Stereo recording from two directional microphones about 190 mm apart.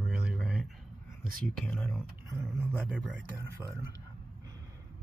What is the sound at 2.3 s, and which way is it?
Speech, 10° right (ahead or behind).